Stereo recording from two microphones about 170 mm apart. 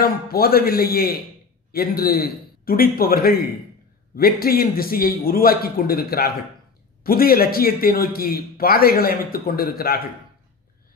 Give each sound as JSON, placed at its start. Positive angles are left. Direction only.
{"t": 0.0, "sound": "a man's voice", "side_deg": 65}